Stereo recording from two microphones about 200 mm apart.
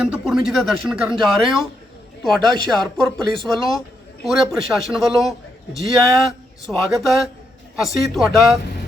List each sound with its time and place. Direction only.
0.0 s speech: 5° right (ahead or behind)